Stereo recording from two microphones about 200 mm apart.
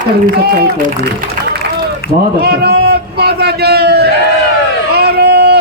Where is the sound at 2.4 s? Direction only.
55° right (ahead or behind).